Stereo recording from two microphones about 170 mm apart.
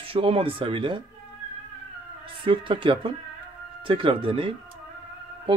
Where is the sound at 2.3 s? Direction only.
30° right (ahead or behind).